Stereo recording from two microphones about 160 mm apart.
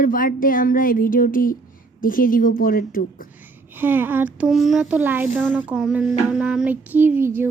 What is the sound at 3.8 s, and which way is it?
Child singing, 10° right (ahead or behind).